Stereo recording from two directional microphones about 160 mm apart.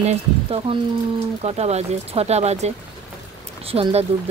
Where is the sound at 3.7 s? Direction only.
40° right (ahead or behind).